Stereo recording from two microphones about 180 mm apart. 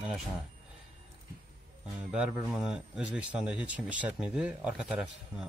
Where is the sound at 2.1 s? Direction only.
5° right (ahead or behind).